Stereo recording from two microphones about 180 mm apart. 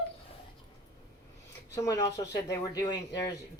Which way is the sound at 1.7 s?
15° left (ahead or behind).